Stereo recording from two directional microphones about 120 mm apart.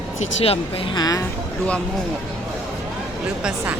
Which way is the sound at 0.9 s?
30° left (ahead or behind).